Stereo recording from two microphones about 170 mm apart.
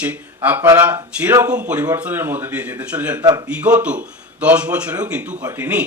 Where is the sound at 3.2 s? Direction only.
20° right (ahead or behind).